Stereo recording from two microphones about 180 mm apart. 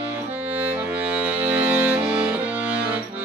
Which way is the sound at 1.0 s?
10° right (ahead or behind).